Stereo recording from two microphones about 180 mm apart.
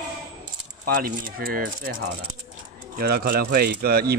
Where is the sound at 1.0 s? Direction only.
55° right (ahead or behind).